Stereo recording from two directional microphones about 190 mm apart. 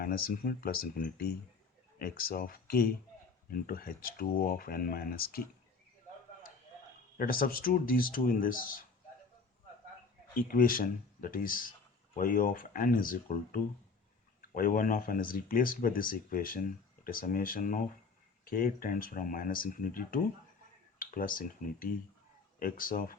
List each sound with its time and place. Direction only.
0.0 s speech: 50° left (ahead or behind)
7.2 s speech: 50° left (ahead or behind)
10.3 s speech: 50° left (ahead or behind)